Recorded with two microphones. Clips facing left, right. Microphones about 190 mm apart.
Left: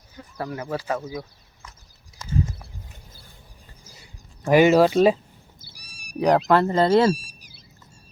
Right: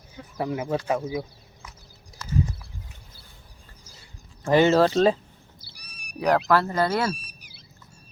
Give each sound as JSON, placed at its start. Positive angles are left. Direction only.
{"t": 0.3, "sound": "speech", "side_deg": -15}
{"t": 4.4, "sound": "speech", "side_deg": 15}
{"t": 5.7, "sound": "meow", "side_deg": -60}
{"t": 6.1, "sound": "speech", "side_deg": 15}